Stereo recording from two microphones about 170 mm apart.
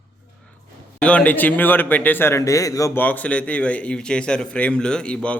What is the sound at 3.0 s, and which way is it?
A man's voice, 10° left (ahead or behind).